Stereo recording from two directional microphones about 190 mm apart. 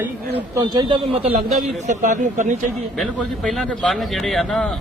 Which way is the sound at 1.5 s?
40° right (ahead or behind).